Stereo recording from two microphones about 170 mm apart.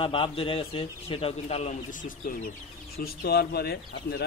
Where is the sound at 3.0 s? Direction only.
65° left (ahead or behind).